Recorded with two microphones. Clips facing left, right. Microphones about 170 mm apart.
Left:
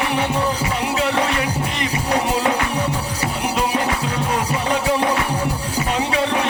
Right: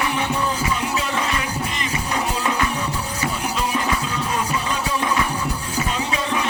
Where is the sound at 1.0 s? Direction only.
65° left (ahead or behind).